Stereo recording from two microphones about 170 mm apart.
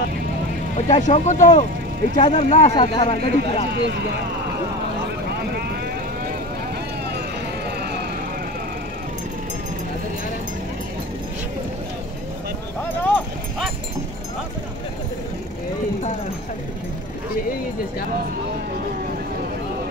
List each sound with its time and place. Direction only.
0.8 s speech: 45° left (ahead or behind)
2.7 s speech: 25° left (ahead or behind)
3.8 s speech: 75° right (ahead or behind)
5.3 s vehicle: 70° right (ahead or behind)
12.8 s dog: 10° left (ahead or behind)